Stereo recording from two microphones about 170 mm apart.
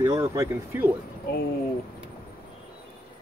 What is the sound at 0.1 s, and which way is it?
Speech, 15° right (ahead or behind).